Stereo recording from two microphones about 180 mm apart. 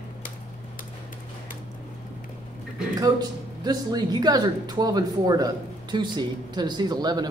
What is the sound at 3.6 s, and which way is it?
Speech, 20° right (ahead or behind).